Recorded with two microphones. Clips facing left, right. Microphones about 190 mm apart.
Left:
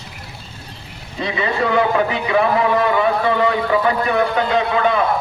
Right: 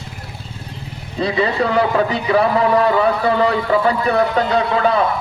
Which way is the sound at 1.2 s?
35° right (ahead or behind).